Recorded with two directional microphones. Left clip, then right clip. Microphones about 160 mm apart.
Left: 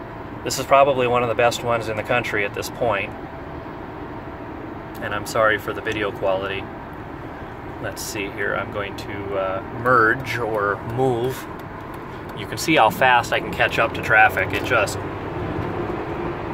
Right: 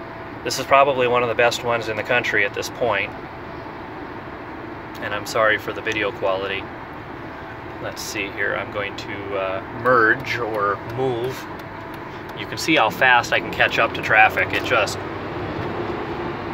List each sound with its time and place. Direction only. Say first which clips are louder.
0.5 s speech: even; 5° left (ahead or behind)
5.0 s speech: even; centre (ahead or behind)
8.1 s speech: right 1 dB; 5° left (ahead or behind)
10.2 s speech: even; 15° left (ahead or behind)
12.6 s speech: left 1 dB; 15° left (ahead or behind)